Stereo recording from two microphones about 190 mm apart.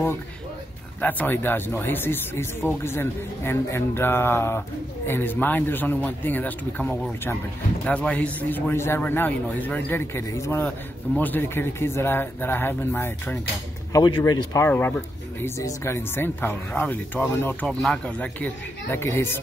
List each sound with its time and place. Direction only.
1.0 s speech: 10° left (ahead or behind)